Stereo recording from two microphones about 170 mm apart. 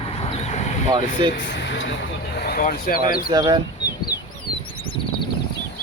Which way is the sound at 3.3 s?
25° right (ahead or behind).